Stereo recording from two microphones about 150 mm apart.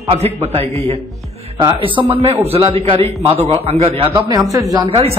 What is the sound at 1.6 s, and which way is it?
A man's voice, 35° right (ahead or behind).